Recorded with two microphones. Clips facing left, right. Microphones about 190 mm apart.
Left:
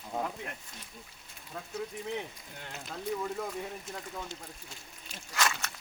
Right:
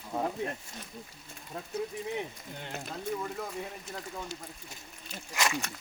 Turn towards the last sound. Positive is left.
turn(degrees=-15)  # may be behind; listen again after turning